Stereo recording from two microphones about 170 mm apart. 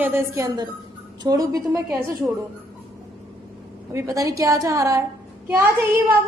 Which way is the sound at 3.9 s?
20° right (ahead or behind).